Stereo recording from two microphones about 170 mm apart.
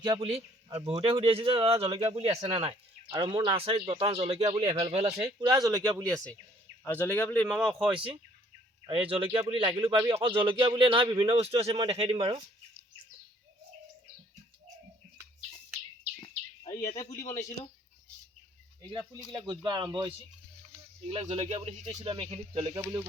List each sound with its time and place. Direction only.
0.0 s a man's voice: 30° right (ahead or behind)
5.4 s speech: 20° right (ahead or behind)
5.8 s speech: 5° left (ahead or behind)
7.9 s a man's voice: 30° right (ahead or behind)
17.2 s speech: 45° left (ahead or behind)
18.8 s a man's voice: 25° right (ahead or behind)
22.7 s speech: 15° right (ahead or behind)